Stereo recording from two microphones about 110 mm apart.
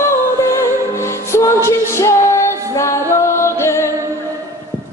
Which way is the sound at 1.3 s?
25° left (ahead or behind).